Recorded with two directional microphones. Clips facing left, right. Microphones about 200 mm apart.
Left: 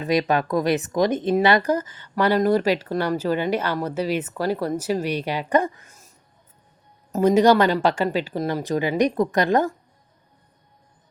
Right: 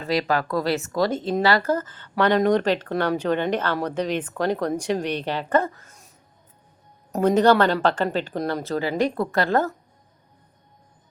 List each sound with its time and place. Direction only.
0.0 s speech: 20° left (ahead or behind)
7.1 s speech: 10° left (ahead or behind)